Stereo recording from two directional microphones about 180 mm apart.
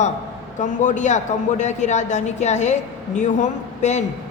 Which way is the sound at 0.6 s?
45° left (ahead or behind).